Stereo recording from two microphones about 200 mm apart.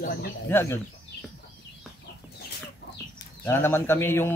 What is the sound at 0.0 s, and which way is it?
Speech, 50° left (ahead or behind).